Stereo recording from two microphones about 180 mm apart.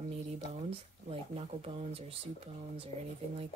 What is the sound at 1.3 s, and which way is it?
Speech, 35° right (ahead or behind).